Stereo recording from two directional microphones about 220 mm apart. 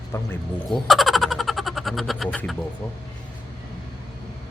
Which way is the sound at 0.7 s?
Centre (ahead or behind).